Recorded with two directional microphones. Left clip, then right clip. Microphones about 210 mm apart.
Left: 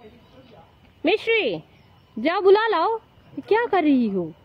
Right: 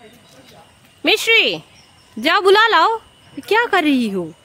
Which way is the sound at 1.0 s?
10° right (ahead or behind).